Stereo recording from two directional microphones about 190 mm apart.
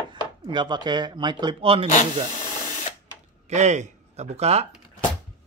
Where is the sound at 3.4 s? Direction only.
40° right (ahead or behind).